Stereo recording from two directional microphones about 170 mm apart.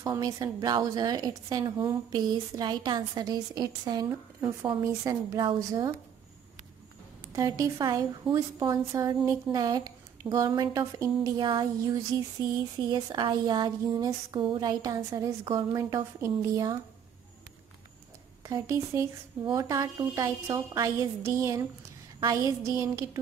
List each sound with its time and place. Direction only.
0.0 s a woman's voice: 20° right (ahead or behind)
7.3 s a woman's voice: 20° right (ahead or behind)
18.4 s a woman's voice: 20° right (ahead or behind)
20.7 s music: 15° right (ahead or behind)
22.2 s a woman's voice: 20° right (ahead or behind)